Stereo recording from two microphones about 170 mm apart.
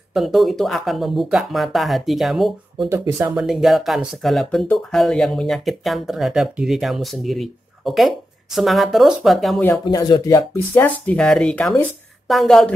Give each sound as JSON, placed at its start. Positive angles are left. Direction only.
{"t": 0.1, "sound": "speech", "side_deg": 0}
{"t": 2.9, "sound": "speech", "side_deg": -15}
{"t": 3.3, "sound": "speech", "side_deg": 0}
{"t": 9.6, "sound": "speech", "side_deg": 15}